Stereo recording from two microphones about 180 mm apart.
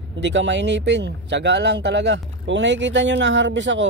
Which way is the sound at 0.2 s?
90° right.